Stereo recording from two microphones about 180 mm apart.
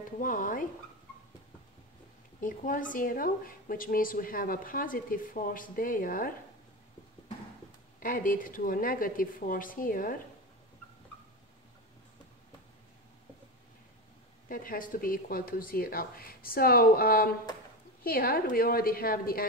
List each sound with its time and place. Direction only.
0.2 s speech: 50° left (ahead or behind)
2.4 s speech: 50° left (ahead or behind)
8.0 s speech: 50° left (ahead or behind)
14.5 s speech: 50° left (ahead or behind)